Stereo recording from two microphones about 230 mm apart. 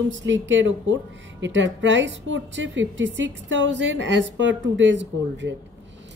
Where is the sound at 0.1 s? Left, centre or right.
Right.